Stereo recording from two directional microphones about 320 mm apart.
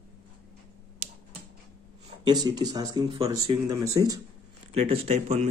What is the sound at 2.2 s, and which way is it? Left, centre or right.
Speech, centre.